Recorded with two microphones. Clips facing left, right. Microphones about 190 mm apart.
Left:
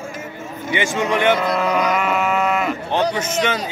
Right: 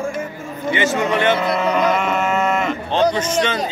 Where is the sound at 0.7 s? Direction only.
15° left (ahead or behind).